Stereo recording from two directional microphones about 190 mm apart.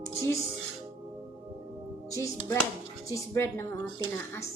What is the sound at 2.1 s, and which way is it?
A woman's voice, 15° left (ahead or behind).